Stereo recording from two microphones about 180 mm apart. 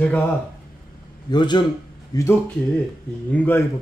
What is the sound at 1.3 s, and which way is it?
Speech, 25° left (ahead or behind).